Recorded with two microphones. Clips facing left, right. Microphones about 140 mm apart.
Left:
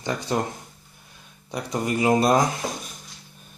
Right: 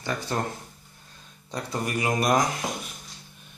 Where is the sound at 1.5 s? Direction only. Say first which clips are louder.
Left 4 dB; 15° left (ahead or behind).